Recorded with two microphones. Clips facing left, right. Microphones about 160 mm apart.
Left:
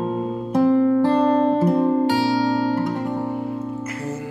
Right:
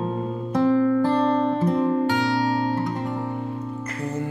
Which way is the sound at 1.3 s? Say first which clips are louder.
Left 4 dB; 45° left (ahead or behind).